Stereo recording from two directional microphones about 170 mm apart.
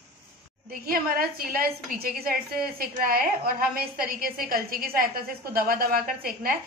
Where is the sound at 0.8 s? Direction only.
60° right (ahead or behind).